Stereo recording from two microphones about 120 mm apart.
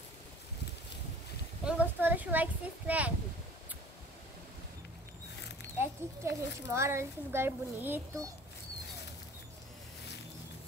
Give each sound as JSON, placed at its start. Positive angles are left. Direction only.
{"t": 1.6, "sound": "speech", "side_deg": -10}
{"t": 5.8, "sound": "speech", "side_deg": -20}